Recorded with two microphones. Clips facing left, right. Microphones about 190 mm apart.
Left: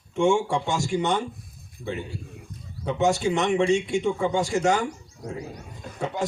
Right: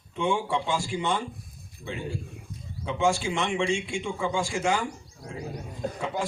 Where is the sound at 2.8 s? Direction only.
40° left (ahead or behind).